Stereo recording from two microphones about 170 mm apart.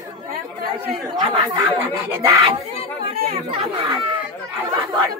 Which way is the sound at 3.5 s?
30° right (ahead or behind).